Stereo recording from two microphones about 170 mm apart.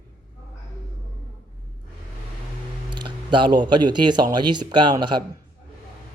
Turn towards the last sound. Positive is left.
turn(degrees=-25)  # may be behind; listen again after turning